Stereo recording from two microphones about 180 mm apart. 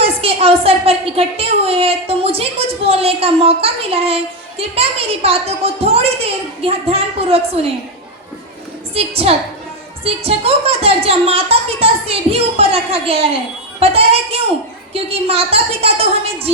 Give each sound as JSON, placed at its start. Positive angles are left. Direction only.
{"t": 0.0, "sound": "a woman's voice", "side_deg": -35}
{"t": 9.0, "sound": "a woman's voice", "side_deg": -35}